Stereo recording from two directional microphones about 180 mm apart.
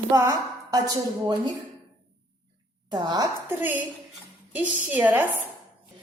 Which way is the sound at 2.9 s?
25° right (ahead or behind).